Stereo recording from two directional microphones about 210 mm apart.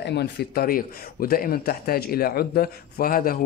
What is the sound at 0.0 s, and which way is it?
Speech, 50° left (ahead or behind).